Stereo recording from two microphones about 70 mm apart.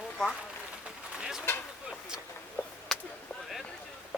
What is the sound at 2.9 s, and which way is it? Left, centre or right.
Whip, centre.